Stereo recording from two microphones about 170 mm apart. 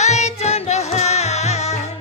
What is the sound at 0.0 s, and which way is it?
Music, 40° left (ahead or behind).